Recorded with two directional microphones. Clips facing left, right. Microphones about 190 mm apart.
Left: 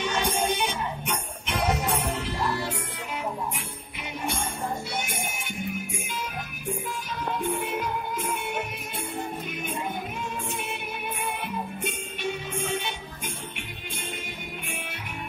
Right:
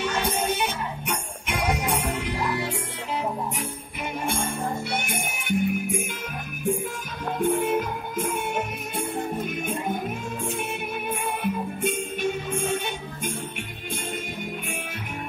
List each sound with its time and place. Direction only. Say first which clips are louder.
0.0 s music: right 1 dB; 10° right (ahead or behind)
4.0 s music: right 3 dB; 50° right (ahead or behind)
7.3 s music: right 8 dB; 50° right (ahead or behind)
10.7 s music: right 4 dB; 45° right (ahead or behind)